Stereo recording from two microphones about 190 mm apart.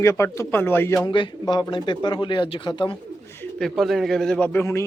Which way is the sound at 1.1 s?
25° left (ahead or behind).